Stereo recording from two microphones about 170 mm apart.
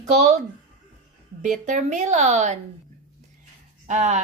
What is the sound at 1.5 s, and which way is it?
A woman's voice, 45° right (ahead or behind).